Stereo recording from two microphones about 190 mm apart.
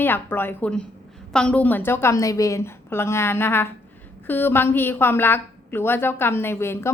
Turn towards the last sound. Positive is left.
turn(degrees=15)  # may be behind; listen again after turning